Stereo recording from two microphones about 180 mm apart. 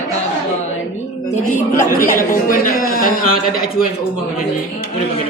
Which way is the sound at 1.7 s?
50° left (ahead or behind).